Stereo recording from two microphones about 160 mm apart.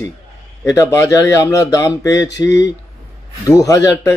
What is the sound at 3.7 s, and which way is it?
Speech, 20° left (ahead or behind).